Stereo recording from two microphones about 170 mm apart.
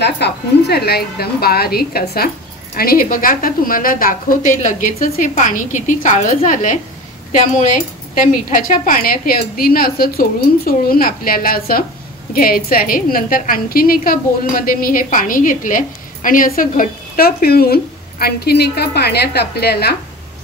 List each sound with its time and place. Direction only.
0.0 s a woman's voice: 75° left (ahead or behind)